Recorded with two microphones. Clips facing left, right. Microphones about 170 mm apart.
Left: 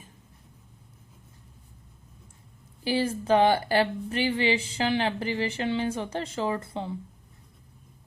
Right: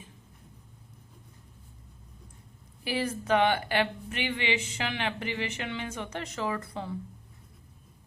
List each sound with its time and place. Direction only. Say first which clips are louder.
2.8 s a woman's voice: left 5 dB; 30° left (ahead or behind)